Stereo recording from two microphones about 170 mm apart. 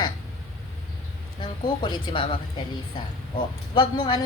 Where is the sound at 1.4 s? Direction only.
25° left (ahead or behind).